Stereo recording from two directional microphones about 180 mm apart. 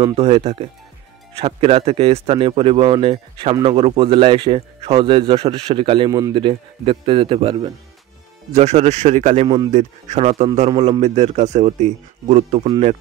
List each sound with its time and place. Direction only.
0.1 s a man's voice: 35° right (ahead or behind)